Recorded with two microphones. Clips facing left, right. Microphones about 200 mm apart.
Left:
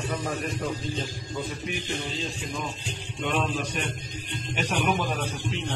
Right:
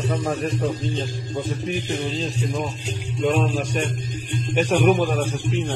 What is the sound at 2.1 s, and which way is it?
A man's voice, 40° right (ahead or behind).